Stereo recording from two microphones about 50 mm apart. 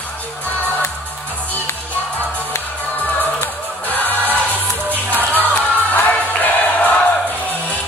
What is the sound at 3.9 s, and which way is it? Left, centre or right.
Music, left.